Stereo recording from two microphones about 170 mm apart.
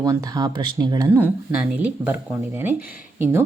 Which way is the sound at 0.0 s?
20° right (ahead or behind).